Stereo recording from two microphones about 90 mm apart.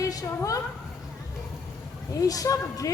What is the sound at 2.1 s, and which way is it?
Speech, 40° left (ahead or behind).